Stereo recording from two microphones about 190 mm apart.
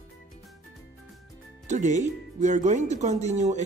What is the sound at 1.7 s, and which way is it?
Speech, 40° right (ahead or behind).